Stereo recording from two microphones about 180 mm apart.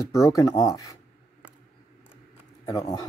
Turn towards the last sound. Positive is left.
turn(degrees=20)  # may be behind; listen again after turning